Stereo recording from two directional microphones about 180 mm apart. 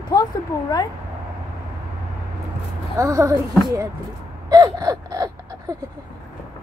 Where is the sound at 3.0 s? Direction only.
20° right (ahead or behind).